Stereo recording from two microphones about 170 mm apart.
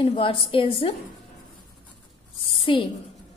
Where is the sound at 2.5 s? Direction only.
30° left (ahead or behind).